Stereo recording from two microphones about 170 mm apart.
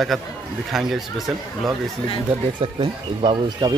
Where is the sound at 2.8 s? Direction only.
30° right (ahead or behind).